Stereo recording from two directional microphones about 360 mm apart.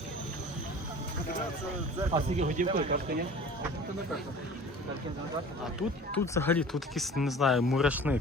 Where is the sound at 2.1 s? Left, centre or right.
Centre.